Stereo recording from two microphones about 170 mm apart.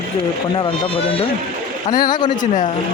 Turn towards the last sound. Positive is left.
turn(degrees=25)  # may be behind; listen again after turning